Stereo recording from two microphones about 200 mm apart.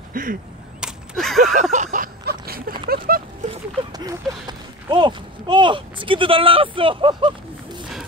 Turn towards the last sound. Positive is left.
turn(degrees=-25)  # may be behind; listen again after turning